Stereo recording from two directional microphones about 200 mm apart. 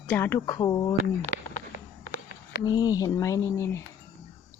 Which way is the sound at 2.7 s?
20° left (ahead or behind).